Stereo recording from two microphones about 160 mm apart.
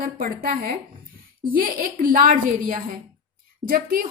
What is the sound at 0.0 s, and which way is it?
A woman's voice, 65° right (ahead or behind).